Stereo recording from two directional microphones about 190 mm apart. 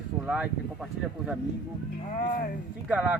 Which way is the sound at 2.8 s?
10° right (ahead or behind).